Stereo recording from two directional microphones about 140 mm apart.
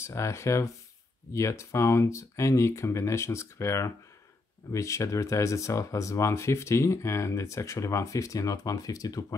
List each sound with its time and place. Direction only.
0.0 s speech: 20° left (ahead or behind)